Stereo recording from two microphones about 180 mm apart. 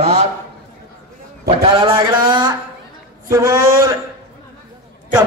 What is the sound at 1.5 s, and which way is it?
A man's voice, 30° right (ahead or behind).